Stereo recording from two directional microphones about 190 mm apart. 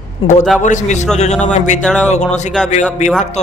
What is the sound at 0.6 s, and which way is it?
A man's voice, 40° left (ahead or behind).